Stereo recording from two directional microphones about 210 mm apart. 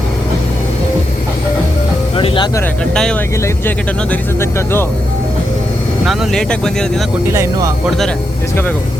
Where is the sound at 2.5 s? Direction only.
5° left (ahead or behind).